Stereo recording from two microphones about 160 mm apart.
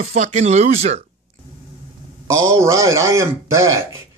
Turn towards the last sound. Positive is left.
turn(degrees=-15)  # may be behind; listen again after turning